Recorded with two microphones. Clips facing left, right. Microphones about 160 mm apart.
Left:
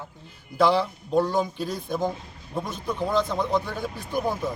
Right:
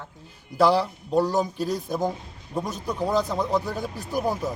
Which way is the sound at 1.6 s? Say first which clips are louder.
Right 3 dB; 40° right (ahead or behind).